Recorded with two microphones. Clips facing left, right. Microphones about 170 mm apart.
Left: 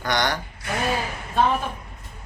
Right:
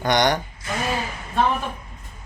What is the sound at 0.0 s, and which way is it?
Speech, 20° right (ahead or behind).